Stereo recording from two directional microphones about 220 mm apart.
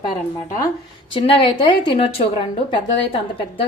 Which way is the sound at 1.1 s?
25° left (ahead or behind).